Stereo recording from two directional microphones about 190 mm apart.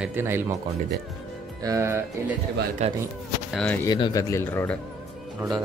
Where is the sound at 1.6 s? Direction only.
15° right (ahead or behind).